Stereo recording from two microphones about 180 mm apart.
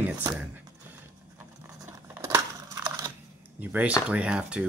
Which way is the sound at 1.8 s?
15° right (ahead or behind).